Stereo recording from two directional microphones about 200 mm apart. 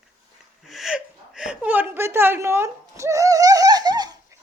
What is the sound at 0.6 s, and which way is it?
Whimper, centre (ahead or behind).